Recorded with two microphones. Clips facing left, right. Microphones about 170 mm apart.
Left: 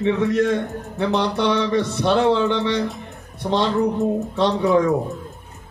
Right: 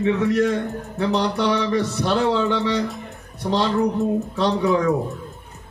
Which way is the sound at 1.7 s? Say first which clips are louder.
Left 2 dB; 20° left (ahead or behind).